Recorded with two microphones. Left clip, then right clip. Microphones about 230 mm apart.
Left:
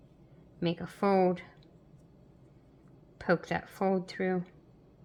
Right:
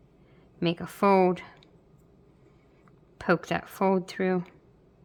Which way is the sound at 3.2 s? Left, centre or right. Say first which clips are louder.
Right 4 dB; right.